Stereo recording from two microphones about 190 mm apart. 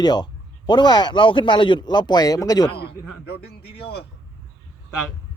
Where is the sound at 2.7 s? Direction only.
60° left (ahead or behind).